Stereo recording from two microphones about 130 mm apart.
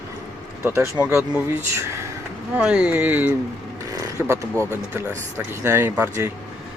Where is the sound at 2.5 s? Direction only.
10° right (ahead or behind).